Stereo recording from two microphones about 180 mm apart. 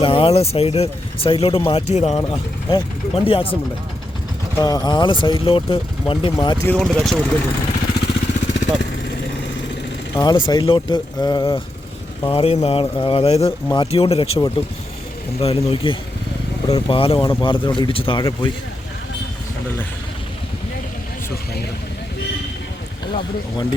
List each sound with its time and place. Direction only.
0.0 s speech: 30° left (ahead or behind)
2.1 s speech: 25° left (ahead or behind)
4.6 s speech: 25° left (ahead or behind)
6.7 s speech: centre (ahead or behind)
8.0 s vehicle: 65° left (ahead or behind)
10.2 s speech: 25° left (ahead or behind)